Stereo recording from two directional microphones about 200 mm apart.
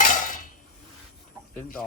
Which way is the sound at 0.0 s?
40° left (ahead or behind).